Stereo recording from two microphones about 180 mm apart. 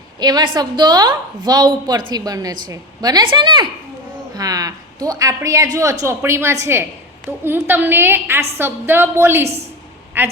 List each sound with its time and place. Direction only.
0.2 s a woman's voice: 25° right (ahead or behind)